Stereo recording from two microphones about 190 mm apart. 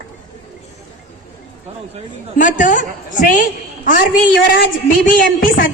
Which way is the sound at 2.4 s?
40° left (ahead or behind).